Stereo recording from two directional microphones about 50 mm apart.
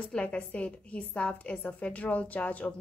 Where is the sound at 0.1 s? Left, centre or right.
Left.